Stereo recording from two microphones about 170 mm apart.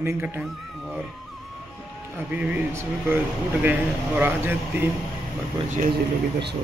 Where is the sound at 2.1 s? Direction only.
10° right (ahead or behind).